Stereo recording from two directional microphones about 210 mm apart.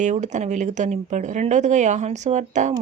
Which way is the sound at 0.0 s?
35° right (ahead or behind).